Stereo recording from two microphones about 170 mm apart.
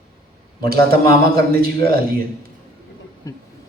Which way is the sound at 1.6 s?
60° right (ahead or behind).